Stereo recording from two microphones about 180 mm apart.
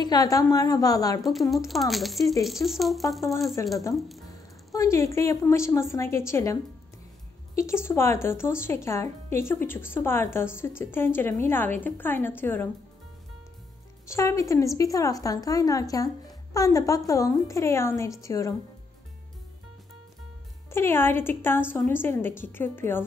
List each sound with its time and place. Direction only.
0.0 s a woman's voice: 20° left (ahead or behind)
1.7 s speech: centre (ahead or behind)
3.6 s speech: 15° left (ahead or behind)
4.7 s speech: 15° left (ahead or behind)
14.0 s a woman's voice: 15° left (ahead or behind)
20.7 s speech: 15° left (ahead or behind)